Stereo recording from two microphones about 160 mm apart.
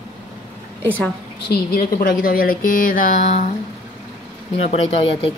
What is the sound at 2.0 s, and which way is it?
Speech, 65° left (ahead or behind).